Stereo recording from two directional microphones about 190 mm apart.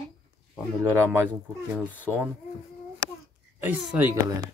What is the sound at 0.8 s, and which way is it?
Speech, 15° right (ahead or behind).